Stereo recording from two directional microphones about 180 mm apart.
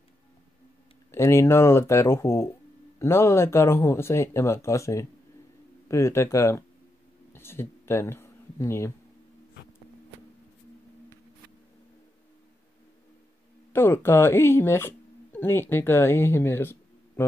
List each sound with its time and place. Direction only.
1.1 s speech: 15° left (ahead or behind)
7.3 s a sound: 15° left (ahead or behind)
13.7 s speech: 15° left (ahead or behind)